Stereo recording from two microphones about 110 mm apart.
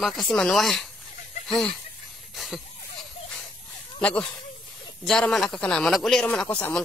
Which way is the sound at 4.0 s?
10° left (ahead or behind).